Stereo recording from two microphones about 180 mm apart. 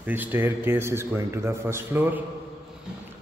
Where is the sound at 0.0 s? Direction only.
10° right (ahead or behind).